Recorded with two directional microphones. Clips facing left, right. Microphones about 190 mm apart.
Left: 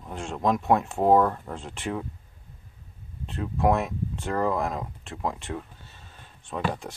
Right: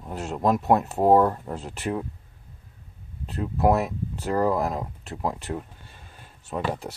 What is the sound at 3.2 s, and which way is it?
Speech, 5° right (ahead or behind).